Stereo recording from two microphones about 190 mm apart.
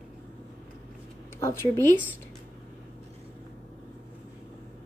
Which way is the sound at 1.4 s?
10° left (ahead or behind).